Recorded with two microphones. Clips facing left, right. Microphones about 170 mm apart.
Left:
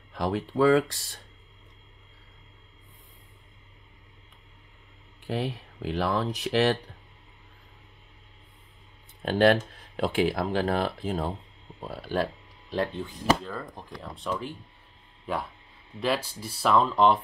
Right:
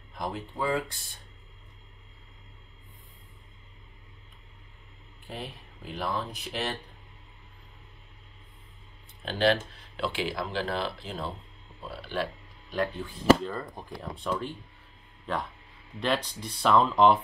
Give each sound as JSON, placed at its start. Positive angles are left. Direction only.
{"t": 0.2, "sound": "speech", "side_deg": 90}
{"t": 5.2, "sound": "speech", "side_deg": 85}
{"t": 9.2, "sound": "speech", "side_deg": 50}
{"t": 13.5, "sound": "speech", "side_deg": 0}